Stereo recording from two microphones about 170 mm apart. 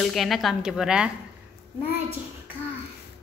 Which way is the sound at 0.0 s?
Centre (ahead or behind).